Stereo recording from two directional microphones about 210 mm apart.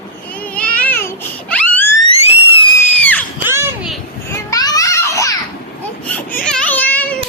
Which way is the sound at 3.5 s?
10° right (ahead or behind).